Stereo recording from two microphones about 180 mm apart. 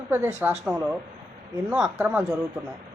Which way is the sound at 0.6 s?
5° right (ahead or behind).